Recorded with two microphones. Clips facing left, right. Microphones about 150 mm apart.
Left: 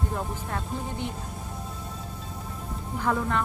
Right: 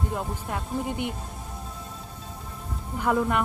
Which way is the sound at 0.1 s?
10° right (ahead or behind).